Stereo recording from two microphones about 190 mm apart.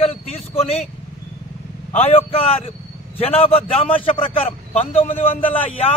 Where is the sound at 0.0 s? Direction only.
35° left (ahead or behind).